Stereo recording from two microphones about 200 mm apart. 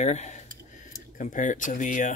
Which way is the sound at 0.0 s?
35° left (ahead or behind).